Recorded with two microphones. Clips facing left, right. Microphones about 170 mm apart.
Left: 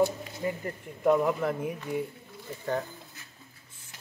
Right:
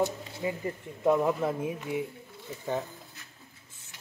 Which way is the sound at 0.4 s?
10° right (ahead or behind).